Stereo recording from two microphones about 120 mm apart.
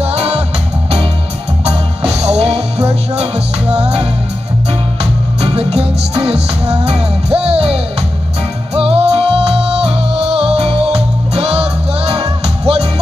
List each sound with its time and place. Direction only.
0.0 s music: 60° right (ahead or behind)
2.2 s music: 60° right (ahead or behind)
5.4 s music: 55° right (ahead or behind)